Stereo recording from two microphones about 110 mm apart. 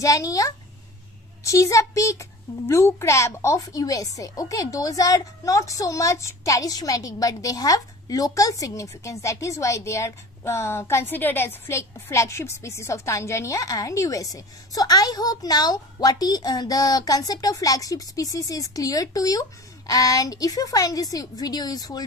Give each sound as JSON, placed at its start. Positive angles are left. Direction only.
{"t": 0.0, "sound": "a woman's voice", "side_deg": 30}